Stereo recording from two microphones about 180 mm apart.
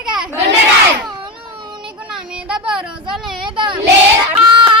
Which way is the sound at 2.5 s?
5° right (ahead or behind).